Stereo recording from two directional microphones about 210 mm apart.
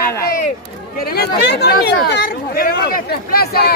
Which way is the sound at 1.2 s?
50° left (ahead or behind).